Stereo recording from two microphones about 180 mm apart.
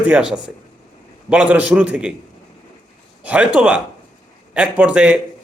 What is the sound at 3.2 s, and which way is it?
A man's voice, 5° right (ahead or behind).